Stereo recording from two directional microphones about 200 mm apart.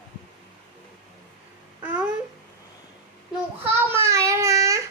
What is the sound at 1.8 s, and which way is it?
Babbling, 10° right (ahead or behind).